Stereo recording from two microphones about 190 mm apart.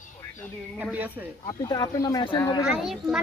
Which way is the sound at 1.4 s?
20° left (ahead or behind).